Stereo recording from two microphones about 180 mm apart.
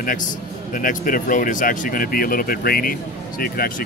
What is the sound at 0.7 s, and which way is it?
Speech, 50° left (ahead or behind).